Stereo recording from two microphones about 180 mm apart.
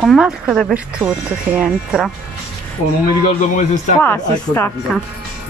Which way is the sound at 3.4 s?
45° left (ahead or behind).